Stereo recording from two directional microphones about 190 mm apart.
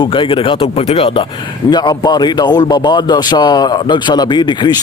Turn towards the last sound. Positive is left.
turn(degrees=25)  # may be behind; listen again after turning